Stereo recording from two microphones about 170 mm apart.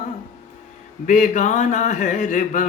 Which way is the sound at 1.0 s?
45° left (ahead or behind).